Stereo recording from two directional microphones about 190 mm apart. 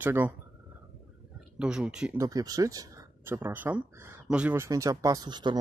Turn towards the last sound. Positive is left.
turn(degrees=-20)  # may be behind; listen again after turning